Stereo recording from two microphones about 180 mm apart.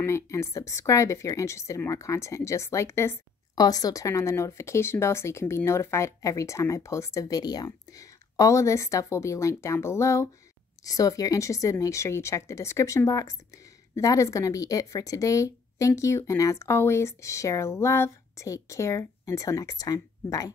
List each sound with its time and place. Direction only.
0.0 s speech: 15° left (ahead or behind)